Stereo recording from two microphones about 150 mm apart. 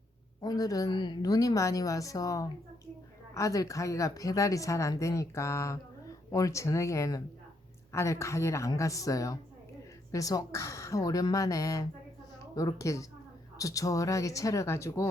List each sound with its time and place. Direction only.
0.4 s a woman's voice: 25° left (ahead or behind)